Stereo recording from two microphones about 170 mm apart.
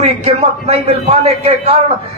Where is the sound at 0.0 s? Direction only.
40° right (ahead or behind).